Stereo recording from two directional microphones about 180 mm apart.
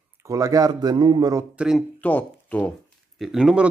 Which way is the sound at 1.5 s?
5° right (ahead or behind).